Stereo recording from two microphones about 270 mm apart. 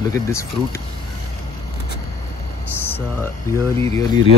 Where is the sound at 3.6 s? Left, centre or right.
Centre.